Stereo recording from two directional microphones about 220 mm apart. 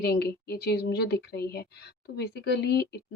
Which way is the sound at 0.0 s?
45° left (ahead or behind).